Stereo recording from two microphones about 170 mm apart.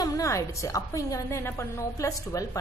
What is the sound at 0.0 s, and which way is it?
A woman's voice, 20° left (ahead or behind).